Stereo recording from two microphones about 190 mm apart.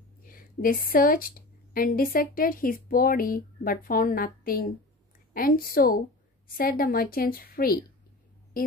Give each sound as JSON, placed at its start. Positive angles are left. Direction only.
{"t": 0.2, "sound": "a woman's voice", "side_deg": 50}